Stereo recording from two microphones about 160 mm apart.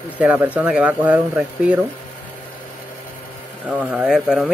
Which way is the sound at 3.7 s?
5° right (ahead or behind).